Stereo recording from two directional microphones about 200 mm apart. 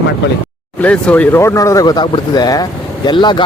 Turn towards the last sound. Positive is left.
turn(degrees=20)  # may be behind; listen again after turning